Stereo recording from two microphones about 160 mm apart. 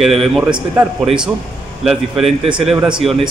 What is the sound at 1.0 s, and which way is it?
A man's voice, 5° right (ahead or behind).